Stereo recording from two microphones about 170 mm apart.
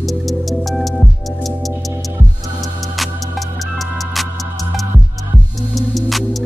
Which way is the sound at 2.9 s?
Centre (ahead or behind).